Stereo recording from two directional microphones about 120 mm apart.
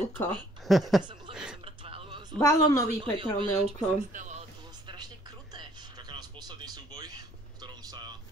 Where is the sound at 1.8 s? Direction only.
50° right (ahead or behind).